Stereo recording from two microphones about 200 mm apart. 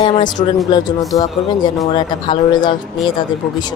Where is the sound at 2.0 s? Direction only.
25° left (ahead or behind).